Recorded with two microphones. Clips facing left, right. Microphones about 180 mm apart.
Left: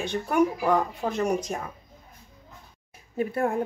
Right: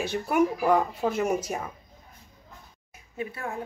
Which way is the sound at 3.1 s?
50° left (ahead or behind).